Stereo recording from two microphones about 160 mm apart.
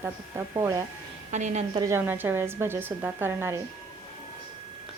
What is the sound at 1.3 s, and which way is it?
Speech, 45° right (ahead or behind).